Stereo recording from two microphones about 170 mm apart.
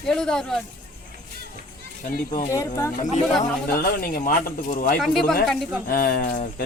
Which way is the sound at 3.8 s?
55° left (ahead or behind).